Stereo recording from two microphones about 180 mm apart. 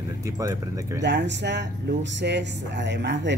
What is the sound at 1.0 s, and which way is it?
Speech, 75° right (ahead or behind).